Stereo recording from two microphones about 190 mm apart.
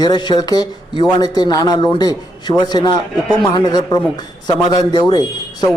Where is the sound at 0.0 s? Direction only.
25° left (ahead or behind).